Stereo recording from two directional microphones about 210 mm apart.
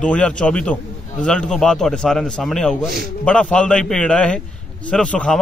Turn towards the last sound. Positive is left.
turn(degrees=5)  # may be behind; listen again after turning